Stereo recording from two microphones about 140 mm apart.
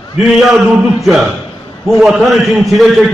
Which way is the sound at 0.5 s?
5° right (ahead or behind).